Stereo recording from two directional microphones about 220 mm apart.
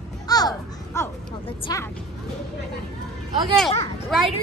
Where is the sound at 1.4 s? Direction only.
25° left (ahead or behind).